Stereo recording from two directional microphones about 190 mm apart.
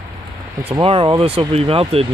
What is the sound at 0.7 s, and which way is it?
Speech, 30° right (ahead or behind).